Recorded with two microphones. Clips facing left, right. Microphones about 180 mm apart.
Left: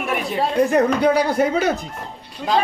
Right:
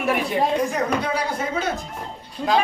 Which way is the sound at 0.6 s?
60° left (ahead or behind).